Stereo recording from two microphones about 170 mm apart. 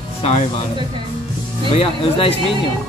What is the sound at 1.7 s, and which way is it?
Speech, 35° left (ahead or behind).